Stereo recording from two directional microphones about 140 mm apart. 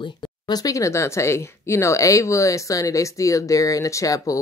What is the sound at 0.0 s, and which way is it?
Speech, 30° left (ahead or behind).